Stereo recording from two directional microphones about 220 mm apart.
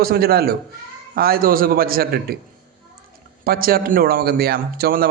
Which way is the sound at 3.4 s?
40° right (ahead or behind).